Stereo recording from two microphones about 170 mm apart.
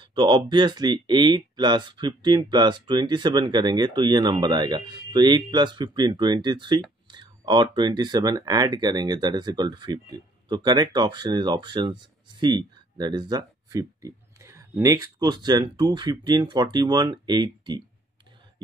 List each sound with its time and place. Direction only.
0.0 s speech: 30° right (ahead or behind)